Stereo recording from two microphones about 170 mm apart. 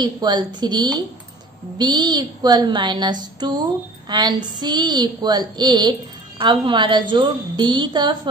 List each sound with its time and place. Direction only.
0.0 s a woman's voice: 25° right (ahead or behind)